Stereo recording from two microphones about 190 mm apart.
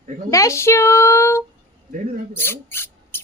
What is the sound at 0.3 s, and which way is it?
A woman's voice, 15° left (ahead or behind).